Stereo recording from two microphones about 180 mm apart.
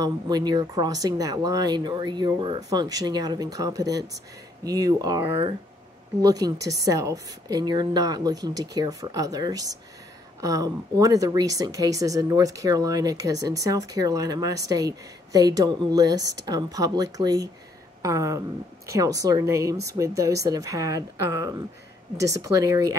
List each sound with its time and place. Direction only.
0.0 s a woman's voice: 25° right (ahead or behind)
18.0 s a sound: 20° right (ahead or behind)
18.9 s a woman's voice: 20° right (ahead or behind)